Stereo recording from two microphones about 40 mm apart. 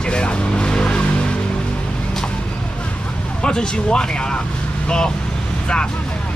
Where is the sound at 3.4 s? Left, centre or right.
Left.